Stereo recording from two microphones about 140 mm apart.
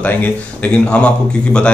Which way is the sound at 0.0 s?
10° left (ahead or behind).